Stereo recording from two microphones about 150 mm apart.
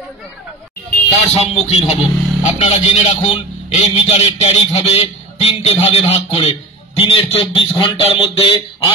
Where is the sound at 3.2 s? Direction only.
50° left (ahead or behind).